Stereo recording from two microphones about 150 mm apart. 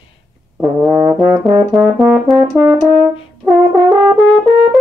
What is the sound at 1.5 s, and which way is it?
Brass instrument, centre (ahead or behind).